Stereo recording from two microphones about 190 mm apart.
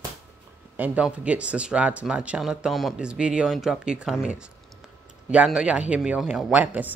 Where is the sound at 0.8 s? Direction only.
5° right (ahead or behind).